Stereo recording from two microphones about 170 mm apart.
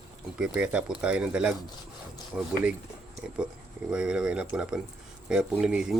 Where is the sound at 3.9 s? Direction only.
5° right (ahead or behind).